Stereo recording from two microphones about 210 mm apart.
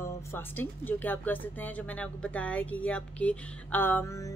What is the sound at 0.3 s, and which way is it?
Speech, 10° left (ahead or behind).